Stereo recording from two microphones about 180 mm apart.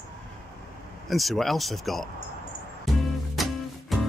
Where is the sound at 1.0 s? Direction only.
Centre (ahead or behind).